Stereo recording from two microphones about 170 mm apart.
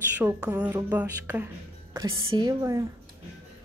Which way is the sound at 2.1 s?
30° right (ahead or behind).